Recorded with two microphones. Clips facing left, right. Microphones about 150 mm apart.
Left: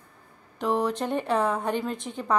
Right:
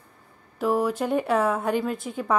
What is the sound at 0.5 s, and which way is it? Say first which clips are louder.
A woman's voice: right 2 dB; 5° right (ahead or behind).